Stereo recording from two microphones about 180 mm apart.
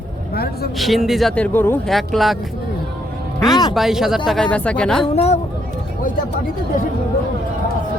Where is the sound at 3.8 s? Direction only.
Centre (ahead or behind).